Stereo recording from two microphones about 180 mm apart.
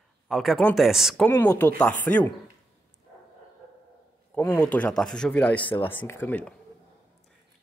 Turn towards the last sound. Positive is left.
turn(degrees=10)  # may be behind; listen again after turning